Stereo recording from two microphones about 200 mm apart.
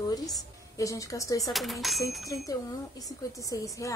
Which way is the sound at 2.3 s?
20° left (ahead or behind).